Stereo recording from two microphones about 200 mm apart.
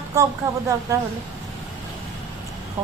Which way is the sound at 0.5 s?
15° right (ahead or behind).